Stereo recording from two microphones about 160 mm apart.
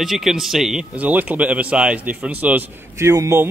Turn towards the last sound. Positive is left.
turn(degrees=-15)  # may be behind; listen again after turning